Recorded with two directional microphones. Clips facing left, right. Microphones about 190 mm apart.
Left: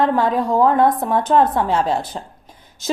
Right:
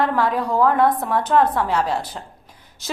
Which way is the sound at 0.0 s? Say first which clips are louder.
Left 3 dB; 20° left (ahead or behind).